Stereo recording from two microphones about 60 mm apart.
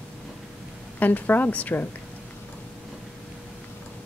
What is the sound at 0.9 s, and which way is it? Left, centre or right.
Speech, left.